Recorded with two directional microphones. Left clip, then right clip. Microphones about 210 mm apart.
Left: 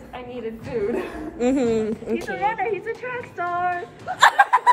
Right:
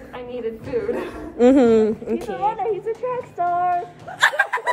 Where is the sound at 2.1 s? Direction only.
15° right (ahead or behind).